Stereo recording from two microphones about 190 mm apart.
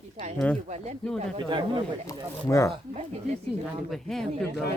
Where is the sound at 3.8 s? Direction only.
Centre (ahead or behind).